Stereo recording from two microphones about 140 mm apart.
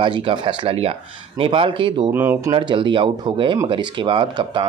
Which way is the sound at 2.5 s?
35° right (ahead or behind).